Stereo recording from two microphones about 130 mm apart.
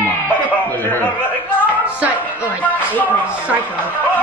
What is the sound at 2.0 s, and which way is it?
Music, 10° right (ahead or behind).